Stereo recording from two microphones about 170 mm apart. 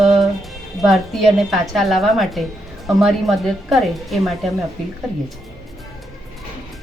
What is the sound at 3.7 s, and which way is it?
Speech, centre (ahead or behind).